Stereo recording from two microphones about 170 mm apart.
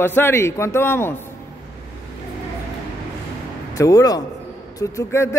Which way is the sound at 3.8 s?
20° left (ahead or behind).